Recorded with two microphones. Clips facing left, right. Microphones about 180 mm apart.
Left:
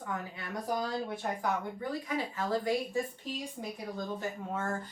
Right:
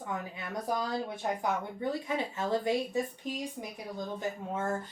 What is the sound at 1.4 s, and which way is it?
Speech, 25° right (ahead or behind).